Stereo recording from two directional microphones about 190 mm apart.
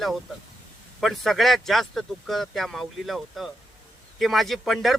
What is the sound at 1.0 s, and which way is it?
Speech, centre (ahead or behind).